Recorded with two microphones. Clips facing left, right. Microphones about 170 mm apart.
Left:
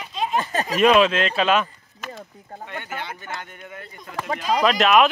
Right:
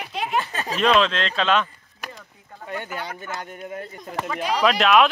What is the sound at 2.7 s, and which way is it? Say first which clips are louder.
Speech: right 3 dB; 40° right (ahead or behind).